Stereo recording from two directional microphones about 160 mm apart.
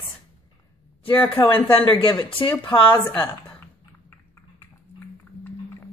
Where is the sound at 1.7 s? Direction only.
35° left (ahead or behind).